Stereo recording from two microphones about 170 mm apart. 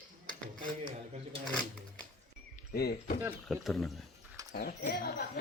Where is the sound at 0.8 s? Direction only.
35° right (ahead or behind).